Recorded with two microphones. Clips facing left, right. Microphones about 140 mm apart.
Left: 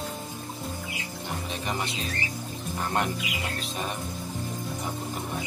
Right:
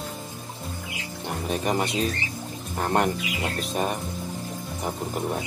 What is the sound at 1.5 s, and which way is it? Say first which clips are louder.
Speech: right 9 dB; 45° right (ahead or behind).